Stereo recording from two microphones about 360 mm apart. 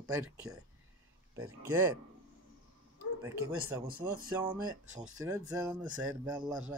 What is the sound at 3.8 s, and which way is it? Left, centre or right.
Speech, right.